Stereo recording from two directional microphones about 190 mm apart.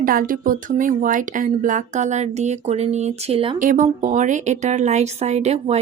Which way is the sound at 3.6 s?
40° right (ahead or behind).